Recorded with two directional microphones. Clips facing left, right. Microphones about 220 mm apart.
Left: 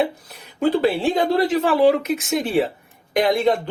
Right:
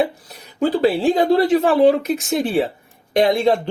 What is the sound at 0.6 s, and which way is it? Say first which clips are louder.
Speech: right 2 dB; 35° right (ahead or behind).